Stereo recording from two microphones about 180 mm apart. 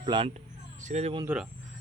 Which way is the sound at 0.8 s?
40° right (ahead or behind).